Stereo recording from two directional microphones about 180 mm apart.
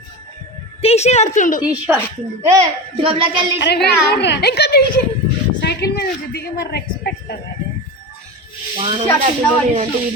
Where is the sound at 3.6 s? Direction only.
65° left (ahead or behind).